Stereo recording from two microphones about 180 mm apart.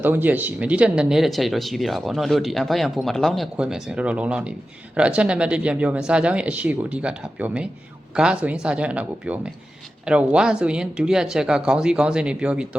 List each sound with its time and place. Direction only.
0.0 s speech: 10° right (ahead or behind)